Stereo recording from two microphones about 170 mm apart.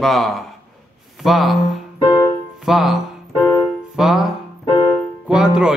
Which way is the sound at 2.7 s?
Centre (ahead or behind).